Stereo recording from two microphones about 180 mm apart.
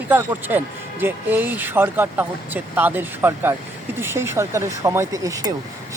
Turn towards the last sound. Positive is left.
turn(degrees=-20)  # may be behind; listen again after turning